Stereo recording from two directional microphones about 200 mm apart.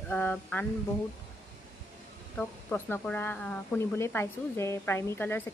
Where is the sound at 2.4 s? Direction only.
10° left (ahead or behind).